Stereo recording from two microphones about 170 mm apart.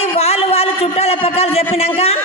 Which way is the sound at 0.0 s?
35° left (ahead or behind).